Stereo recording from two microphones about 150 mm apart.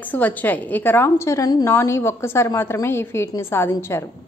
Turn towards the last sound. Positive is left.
turn(degrees=15)  # may be behind; listen again after turning